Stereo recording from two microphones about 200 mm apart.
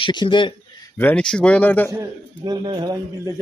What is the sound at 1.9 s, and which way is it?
A man's voice, 20° right (ahead or behind).